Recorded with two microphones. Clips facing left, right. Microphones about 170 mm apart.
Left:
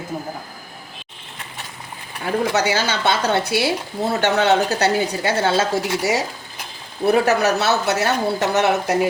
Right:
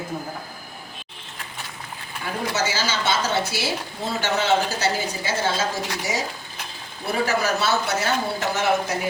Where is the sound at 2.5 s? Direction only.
65° left (ahead or behind).